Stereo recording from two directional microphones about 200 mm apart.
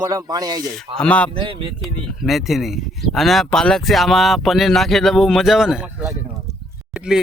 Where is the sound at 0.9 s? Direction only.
5° left (ahead or behind).